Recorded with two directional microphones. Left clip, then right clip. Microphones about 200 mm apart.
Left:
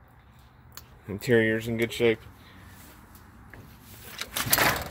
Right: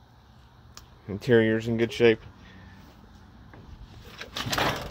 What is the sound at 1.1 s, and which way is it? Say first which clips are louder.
Speech: right 1 dB; 10° right (ahead or behind).